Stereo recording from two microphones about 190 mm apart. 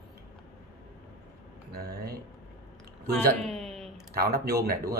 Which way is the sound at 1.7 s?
55° right (ahead or behind).